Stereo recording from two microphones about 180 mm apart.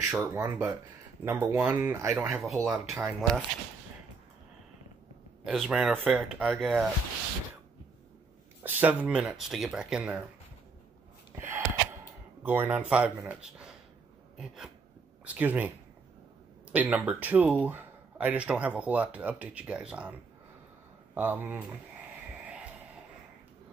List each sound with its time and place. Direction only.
0.0 s speech: 10° right (ahead or behind)
2.2 s speech: centre (ahead or behind)
2.7 s speech: 10° right (ahead or behind)
3.2 s speech: centre (ahead or behind)
5.4 s speech: centre (ahead or behind)
8.6 s speech: 10° right (ahead or behind)
11.3 s gasp: 10° right (ahead or behind)
12.4 s speech: 10° right (ahead or behind)
14.3 s a sound: 5° right (ahead or behind)
15.2 s speech: 10° right (ahead or behind)
16.7 s speech: 10° right (ahead or behind)